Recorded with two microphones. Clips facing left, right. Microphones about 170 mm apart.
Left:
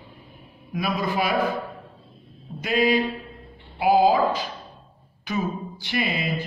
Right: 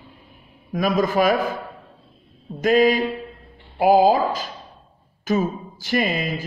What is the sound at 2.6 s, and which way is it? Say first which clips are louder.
A man's voice: right 5 dB; 45° right (ahead or behind).